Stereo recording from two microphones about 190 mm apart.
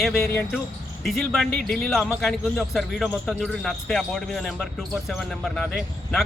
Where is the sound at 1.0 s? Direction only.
Centre (ahead or behind).